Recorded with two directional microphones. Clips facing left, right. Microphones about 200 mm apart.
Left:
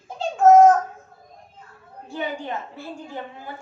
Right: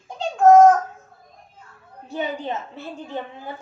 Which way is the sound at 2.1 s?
20° right (ahead or behind).